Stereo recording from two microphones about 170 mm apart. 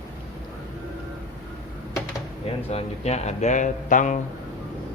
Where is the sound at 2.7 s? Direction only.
40° left (ahead or behind).